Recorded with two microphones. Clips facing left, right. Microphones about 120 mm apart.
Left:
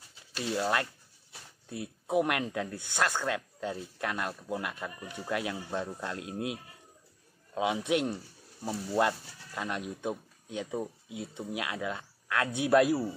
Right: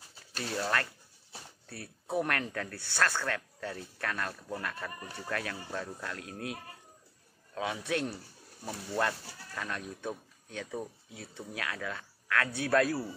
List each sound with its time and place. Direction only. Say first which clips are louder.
0.4 s speech: left 3 dB; 15° left (ahead or behind)